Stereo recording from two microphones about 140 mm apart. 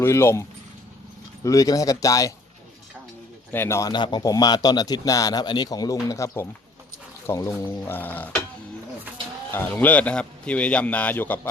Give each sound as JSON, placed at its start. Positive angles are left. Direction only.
{"t": 0.0, "sound": "a man's voice", "side_deg": 20}
{"t": 1.5, "sound": "a man's voice", "side_deg": 25}
{"t": 3.5, "sound": "a man's voice", "side_deg": 15}
{"t": 9.5, "sound": "a man's voice", "side_deg": 15}